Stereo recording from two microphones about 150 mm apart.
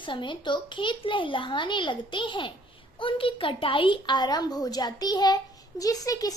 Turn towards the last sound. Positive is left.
turn(degrees=25)  # may be behind; listen again after turning